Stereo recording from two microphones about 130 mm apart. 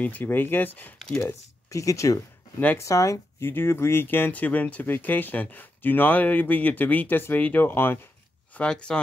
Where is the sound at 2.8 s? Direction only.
25° left (ahead or behind).